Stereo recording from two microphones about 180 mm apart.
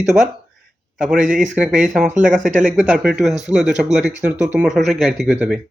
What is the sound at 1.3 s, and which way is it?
Speech, 5° right (ahead or behind).